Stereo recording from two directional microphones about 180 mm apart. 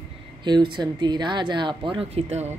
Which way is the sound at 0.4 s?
25° right (ahead or behind).